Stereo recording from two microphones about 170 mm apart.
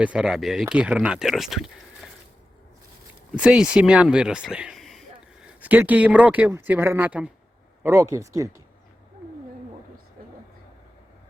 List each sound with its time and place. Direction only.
0.0 s speech: 5° right (ahead or behind)
3.3 s speech: 5° right (ahead or behind)
10.2 s vehicle: 55° right (ahead or behind)